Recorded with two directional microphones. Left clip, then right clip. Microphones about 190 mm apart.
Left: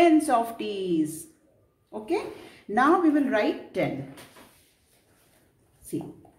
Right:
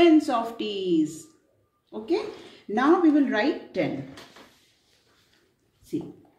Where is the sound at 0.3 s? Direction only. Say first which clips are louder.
Left 2 dB; 20° left (ahead or behind).